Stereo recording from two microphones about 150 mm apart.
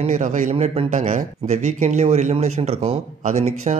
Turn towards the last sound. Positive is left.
turn(degrees=-50)  # may be behind; listen again after turning